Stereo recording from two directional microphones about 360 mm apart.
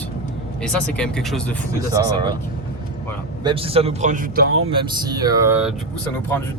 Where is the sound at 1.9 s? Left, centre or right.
Centre.